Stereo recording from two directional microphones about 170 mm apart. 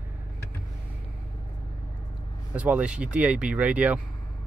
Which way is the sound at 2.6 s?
10° right (ahead or behind).